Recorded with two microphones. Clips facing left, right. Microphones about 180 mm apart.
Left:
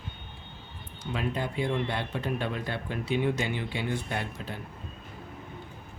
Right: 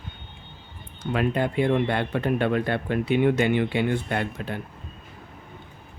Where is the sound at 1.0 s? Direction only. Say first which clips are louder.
Right 7 dB; 60° right (ahead or behind).